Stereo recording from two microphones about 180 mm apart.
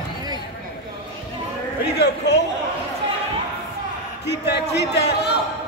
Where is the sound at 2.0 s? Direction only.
70° left (ahead or behind).